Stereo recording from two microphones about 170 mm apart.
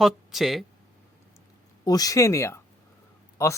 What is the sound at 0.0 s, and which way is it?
Speech, centre (ahead or behind).